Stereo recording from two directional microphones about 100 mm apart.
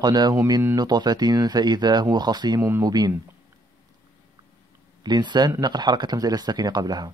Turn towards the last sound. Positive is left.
turn(degrees=-40)  # may be behind; listen again after turning